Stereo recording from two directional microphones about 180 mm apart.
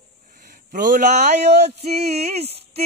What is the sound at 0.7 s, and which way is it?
Speech, 45° right (ahead or behind).